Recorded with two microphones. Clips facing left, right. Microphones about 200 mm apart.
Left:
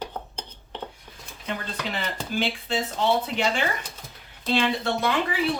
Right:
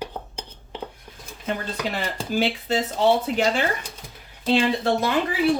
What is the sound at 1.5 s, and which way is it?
Speech, 45° right (ahead or behind).